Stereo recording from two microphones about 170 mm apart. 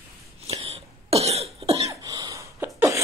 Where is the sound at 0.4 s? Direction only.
35° right (ahead or behind).